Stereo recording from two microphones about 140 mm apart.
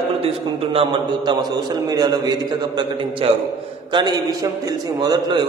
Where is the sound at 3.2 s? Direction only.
45° right (ahead or behind).